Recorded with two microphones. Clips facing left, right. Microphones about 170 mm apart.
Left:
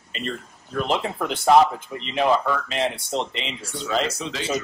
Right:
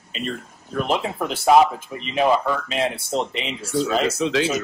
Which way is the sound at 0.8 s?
5° right (ahead or behind).